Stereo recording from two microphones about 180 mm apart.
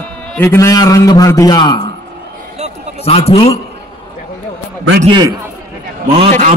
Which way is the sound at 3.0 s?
35° left (ahead or behind).